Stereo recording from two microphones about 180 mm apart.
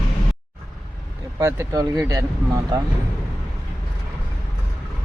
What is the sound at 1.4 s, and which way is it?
Speech, 15° right (ahead or behind).